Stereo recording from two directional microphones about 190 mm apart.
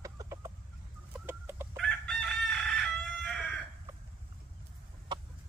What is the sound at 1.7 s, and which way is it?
Chicken, 5° left (ahead or behind).